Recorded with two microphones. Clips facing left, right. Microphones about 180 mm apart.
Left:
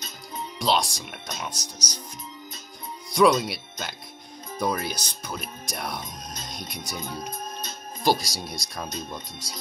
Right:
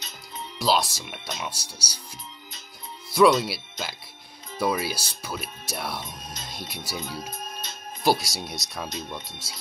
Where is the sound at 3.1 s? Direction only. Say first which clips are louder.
Right 1 dB; centre (ahead or behind).